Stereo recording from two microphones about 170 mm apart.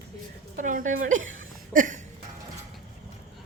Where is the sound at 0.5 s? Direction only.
50° right (ahead or behind).